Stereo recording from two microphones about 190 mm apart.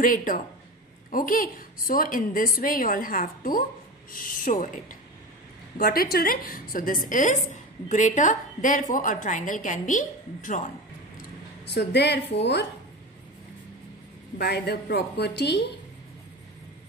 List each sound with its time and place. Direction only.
0.0 s a woman's voice: 45° left (ahead or behind)
11.7 s a woman's voice: 60° left (ahead or behind)
14.4 s a woman's voice: 60° left (ahead or behind)